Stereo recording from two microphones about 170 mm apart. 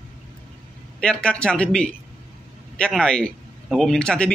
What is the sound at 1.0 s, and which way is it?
Speech, 5° left (ahead or behind).